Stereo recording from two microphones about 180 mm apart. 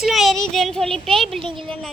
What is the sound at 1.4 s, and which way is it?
Speech, 30° right (ahead or behind).